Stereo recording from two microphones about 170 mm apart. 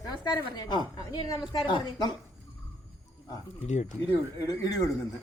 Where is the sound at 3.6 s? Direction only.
45° left (ahead or behind).